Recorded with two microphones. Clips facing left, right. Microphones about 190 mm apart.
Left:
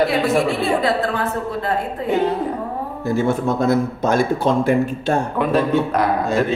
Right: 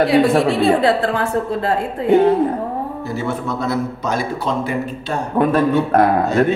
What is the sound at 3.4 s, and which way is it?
Speech, 50° left (ahead or behind).